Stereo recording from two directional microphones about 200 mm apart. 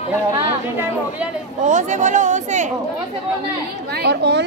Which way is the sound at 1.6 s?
40° right (ahead or behind).